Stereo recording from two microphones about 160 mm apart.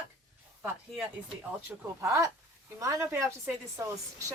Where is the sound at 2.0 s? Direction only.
20° right (ahead or behind).